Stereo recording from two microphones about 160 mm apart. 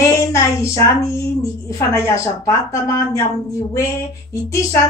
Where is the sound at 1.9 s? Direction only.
20° left (ahead or behind).